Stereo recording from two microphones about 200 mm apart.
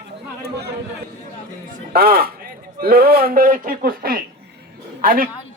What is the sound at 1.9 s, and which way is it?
A man's voice, 50° right (ahead or behind).